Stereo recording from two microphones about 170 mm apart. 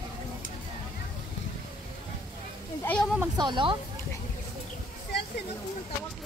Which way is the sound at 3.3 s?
25° right (ahead or behind).